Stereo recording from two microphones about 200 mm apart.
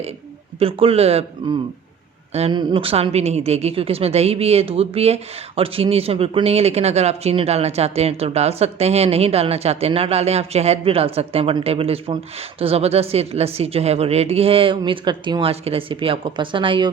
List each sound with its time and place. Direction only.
0.6 s a woman's voice: 30° right (ahead or behind)